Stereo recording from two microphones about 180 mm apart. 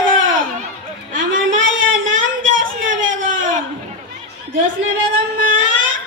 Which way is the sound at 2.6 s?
50° right (ahead or behind).